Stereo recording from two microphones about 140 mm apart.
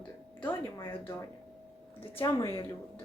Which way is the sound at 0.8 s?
20° left (ahead or behind).